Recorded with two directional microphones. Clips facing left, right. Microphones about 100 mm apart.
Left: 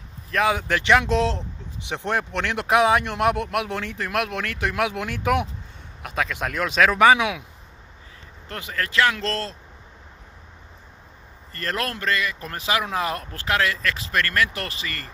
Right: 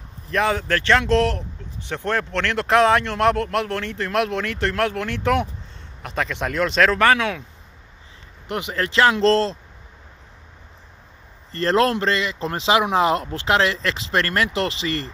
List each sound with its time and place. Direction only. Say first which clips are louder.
0.3 s speech: right 1 dB; centre (ahead or behind)
0.6 s speech: even; 15° left (ahead or behind)
8.5 s speech: right 5 dB; 20° right (ahead or behind)
11.5 s speech: right 10 dB; 30° right (ahead or behind)